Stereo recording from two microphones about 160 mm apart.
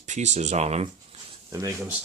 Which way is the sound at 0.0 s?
45° right (ahead or behind).